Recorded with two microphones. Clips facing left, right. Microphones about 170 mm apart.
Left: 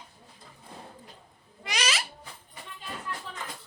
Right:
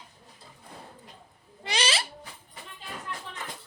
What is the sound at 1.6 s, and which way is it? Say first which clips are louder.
Owl: right 2 dB; 30° right (ahead or behind).